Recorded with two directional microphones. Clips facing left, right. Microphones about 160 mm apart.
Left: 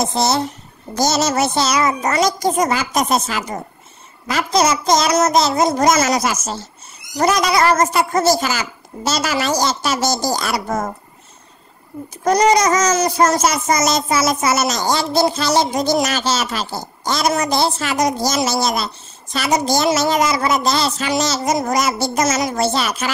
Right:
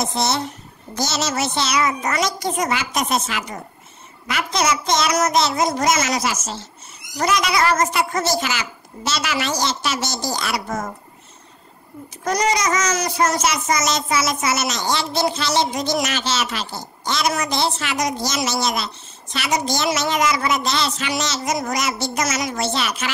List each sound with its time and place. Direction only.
0.0 s a child's voice: 35° left (ahead or behind)
12.3 s a child's voice: 30° left (ahead or behind)